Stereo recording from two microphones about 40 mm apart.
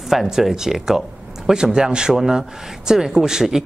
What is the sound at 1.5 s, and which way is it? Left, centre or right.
Speech, centre.